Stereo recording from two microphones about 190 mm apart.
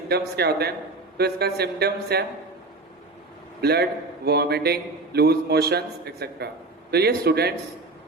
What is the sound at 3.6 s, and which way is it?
A man's voice, 60° right (ahead or behind).